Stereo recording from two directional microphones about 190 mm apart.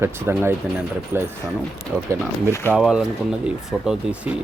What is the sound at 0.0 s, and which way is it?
Speech, 15° right (ahead or behind).